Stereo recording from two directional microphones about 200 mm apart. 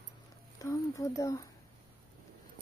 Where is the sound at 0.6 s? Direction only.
15° left (ahead or behind).